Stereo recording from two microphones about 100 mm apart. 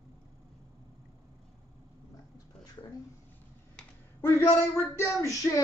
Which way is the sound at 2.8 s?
30° left (ahead or behind).